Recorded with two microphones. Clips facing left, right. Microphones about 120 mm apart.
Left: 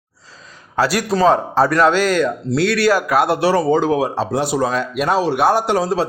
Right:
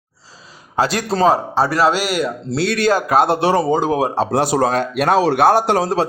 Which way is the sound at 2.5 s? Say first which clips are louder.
Even; 20° right (ahead or behind).